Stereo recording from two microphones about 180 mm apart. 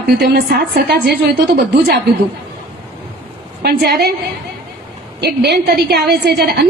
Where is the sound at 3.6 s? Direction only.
60° right (ahead or behind).